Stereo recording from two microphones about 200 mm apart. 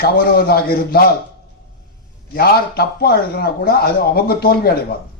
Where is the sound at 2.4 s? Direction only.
50° left (ahead or behind).